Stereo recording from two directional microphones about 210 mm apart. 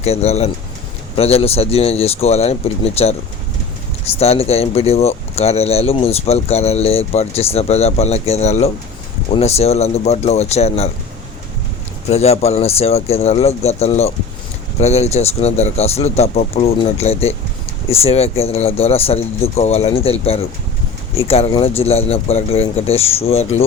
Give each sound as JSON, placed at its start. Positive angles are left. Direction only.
{"t": 0.0, "sound": "speech", "side_deg": 30}
{"t": 12.0, "sound": "speech", "side_deg": 30}